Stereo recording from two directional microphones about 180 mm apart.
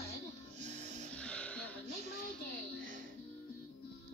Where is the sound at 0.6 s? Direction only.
40° right (ahead or behind).